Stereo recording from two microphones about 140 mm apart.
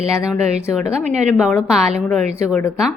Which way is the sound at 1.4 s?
5° right (ahead or behind).